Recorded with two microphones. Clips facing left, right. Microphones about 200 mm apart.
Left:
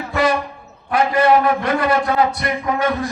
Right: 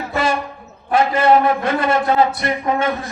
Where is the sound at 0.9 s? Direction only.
25° right (ahead or behind).